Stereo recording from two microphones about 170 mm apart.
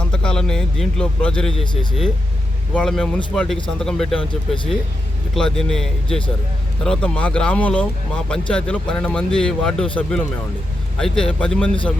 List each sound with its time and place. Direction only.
0.1 s speech: 5° left (ahead or behind)
1.5 s speech: 30° left (ahead or behind)
2.7 s speech: 5° left (ahead or behind)
4.3 s speech: 30° left (ahead or behind)
5.3 s speech: 5° left (ahead or behind)